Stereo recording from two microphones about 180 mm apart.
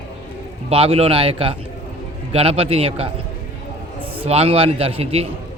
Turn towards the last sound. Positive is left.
turn(degrees=-35)  # may be behind; listen again after turning